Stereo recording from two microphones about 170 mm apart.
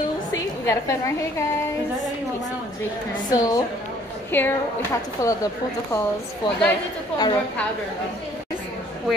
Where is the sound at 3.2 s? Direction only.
20° left (ahead or behind).